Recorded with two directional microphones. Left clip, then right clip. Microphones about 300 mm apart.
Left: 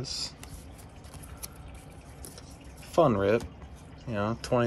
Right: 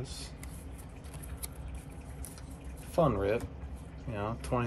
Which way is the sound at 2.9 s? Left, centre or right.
Centre.